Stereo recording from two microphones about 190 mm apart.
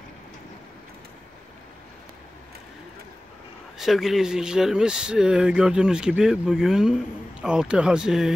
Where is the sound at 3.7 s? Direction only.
Centre (ahead or behind).